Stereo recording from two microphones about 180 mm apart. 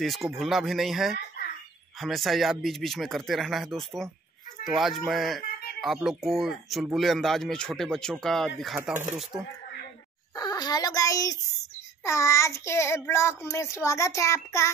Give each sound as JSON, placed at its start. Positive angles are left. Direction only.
{"t": 0.0, "sound": "speech", "side_deg": 0}
{"t": 10.3, "sound": "a child's voice", "side_deg": 20}
{"t": 12.0, "sound": "child singing", "side_deg": 15}